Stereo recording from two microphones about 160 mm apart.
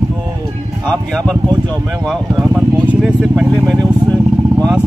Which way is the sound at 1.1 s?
5° left (ahead or behind).